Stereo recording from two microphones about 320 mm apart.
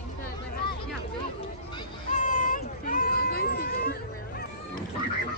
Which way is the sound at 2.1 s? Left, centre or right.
Left.